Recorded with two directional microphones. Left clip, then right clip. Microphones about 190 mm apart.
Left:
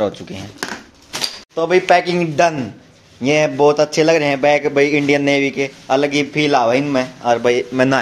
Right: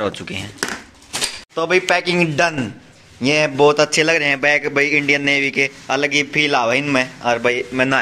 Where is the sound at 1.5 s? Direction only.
Centre (ahead or behind).